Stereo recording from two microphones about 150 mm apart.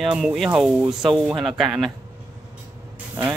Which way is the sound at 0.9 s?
30° right (ahead or behind).